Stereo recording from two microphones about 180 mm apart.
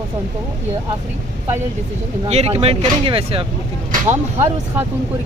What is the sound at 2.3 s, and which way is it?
Speech, 35° right (ahead or behind).